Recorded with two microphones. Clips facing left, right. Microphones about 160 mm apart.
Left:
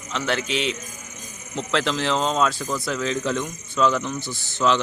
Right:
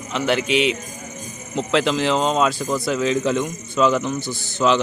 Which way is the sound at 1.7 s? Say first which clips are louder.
Right 4 dB; 10° right (ahead or behind).